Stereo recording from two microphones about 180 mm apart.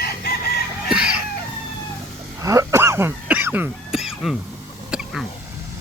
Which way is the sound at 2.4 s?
15° right (ahead or behind).